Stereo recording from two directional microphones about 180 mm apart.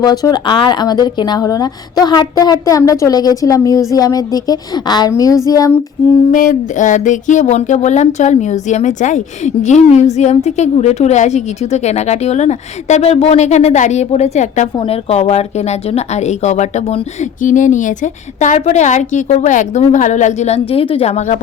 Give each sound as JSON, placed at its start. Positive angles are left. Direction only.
{"t": 0.0, "sound": "a woman's voice", "side_deg": 20}
{"t": 6.3, "sound": "speech", "side_deg": 45}